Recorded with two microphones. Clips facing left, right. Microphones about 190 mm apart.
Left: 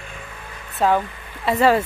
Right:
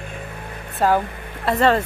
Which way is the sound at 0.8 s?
Centre (ahead or behind).